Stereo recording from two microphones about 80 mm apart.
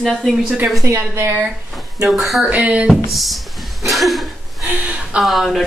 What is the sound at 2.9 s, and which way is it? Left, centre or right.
Speech, centre.